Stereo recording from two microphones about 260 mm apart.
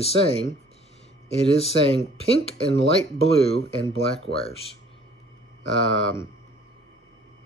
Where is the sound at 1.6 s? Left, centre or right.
Left.